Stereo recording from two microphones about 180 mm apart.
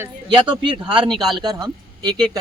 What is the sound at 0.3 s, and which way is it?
Speech, 25° right (ahead or behind).